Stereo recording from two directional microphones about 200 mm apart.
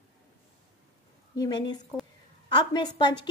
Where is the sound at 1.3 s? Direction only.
20° left (ahead or behind).